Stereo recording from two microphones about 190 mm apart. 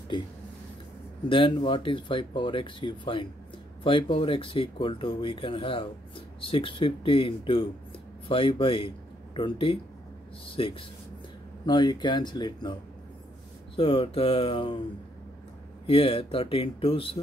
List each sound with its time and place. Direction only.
1.3 s speech: 25° left (ahead or behind)
13.7 s speech: 30° left (ahead or behind)
15.9 s speech: 30° left (ahead or behind)